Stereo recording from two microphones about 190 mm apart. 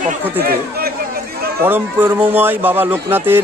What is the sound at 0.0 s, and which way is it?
Speech, 55° right (ahead or behind).